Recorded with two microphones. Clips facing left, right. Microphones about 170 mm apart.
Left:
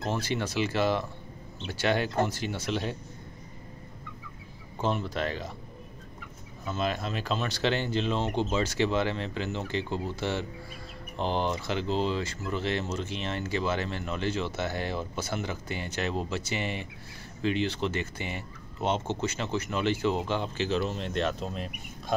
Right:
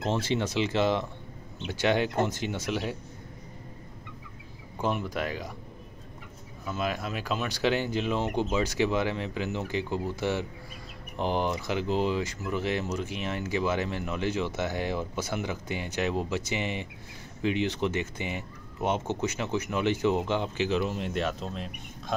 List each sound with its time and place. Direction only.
0.0 s speech: 25° right (ahead or behind)
4.8 s speech: 10° right (ahead or behind)
6.6 s speech: 10° right (ahead or behind)
11.1 s speech: 15° right (ahead or behind); by 22.1 s centre (ahead or behind)